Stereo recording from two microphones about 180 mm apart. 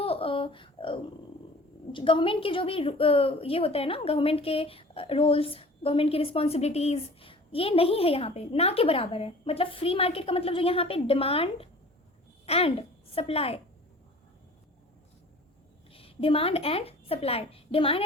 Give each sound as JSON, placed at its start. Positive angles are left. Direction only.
{"t": 0.0, "sound": "a sound", "side_deg": 30}
{"t": 1.9, "sound": "a woman's voice", "side_deg": 30}
{"t": 15.9, "sound": "a woman's voice", "side_deg": 30}